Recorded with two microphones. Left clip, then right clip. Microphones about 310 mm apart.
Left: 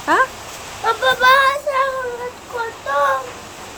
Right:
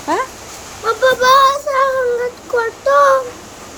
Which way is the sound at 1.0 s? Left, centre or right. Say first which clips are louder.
Right 3 dB; centre.